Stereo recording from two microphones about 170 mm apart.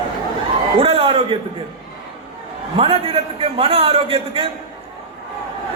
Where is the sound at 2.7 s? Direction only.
35° right (ahead or behind).